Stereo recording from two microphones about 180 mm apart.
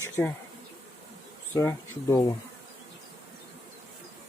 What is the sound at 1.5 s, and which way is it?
Speech, 15° left (ahead or behind).